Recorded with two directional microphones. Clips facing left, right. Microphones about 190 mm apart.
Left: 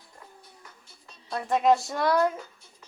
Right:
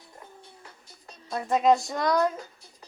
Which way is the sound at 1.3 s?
Centre (ahead or behind).